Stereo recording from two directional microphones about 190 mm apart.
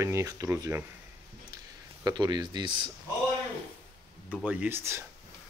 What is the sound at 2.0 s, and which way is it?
Speech, 20° right (ahead or behind).